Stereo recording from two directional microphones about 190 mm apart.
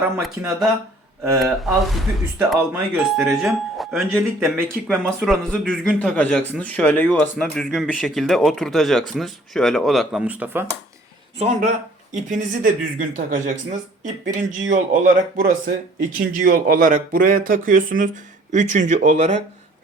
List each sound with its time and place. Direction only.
0.2 s speech: centre (ahead or behind)
11.3 s speech: 40° right (ahead or behind)